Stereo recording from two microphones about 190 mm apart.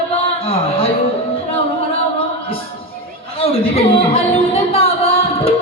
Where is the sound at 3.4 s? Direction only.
30° left (ahead or behind).